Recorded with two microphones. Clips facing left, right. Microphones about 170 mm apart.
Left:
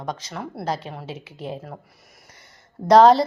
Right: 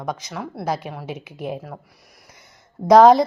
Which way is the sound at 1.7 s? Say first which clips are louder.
Right 1 dB; centre (ahead or behind).